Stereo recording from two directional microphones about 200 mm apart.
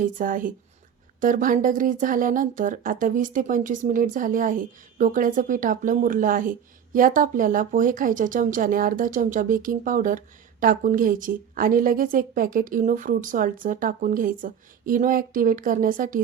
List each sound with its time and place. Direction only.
0.0 s speech: 45° right (ahead or behind)